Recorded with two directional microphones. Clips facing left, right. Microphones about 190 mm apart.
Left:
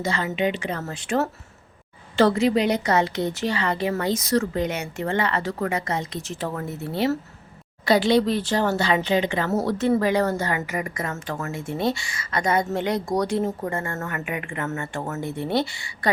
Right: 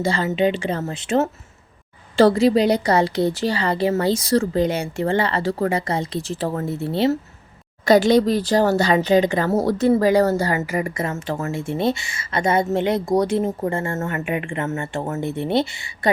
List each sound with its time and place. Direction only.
0.0 s a woman's voice: 30° right (ahead or behind)
2.1 s a woman's voice: 35° right (ahead or behind)
7.9 s a woman's voice: 45° right (ahead or behind); by 15.9 s 25° right (ahead or behind)